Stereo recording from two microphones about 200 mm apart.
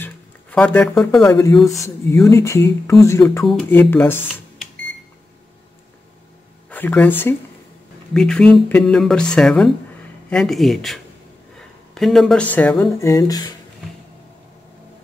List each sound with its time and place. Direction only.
0.0 s a sound: 5° left (ahead or behind)
1.3 s speech: 15° left (ahead or behind)
6.7 s speech: 10° left (ahead or behind)